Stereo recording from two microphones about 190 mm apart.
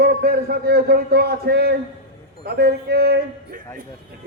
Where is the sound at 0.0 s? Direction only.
55° right (ahead or behind).